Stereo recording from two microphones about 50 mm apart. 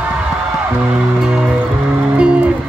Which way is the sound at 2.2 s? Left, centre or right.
Right.